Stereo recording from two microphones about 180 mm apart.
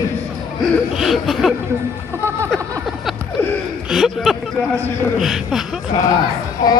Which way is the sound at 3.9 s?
Centre (ahead or behind).